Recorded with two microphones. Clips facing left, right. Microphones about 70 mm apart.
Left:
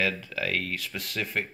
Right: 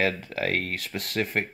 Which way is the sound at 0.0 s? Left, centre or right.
Right.